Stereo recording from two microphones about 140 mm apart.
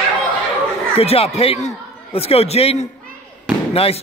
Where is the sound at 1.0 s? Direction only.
45° left (ahead or behind).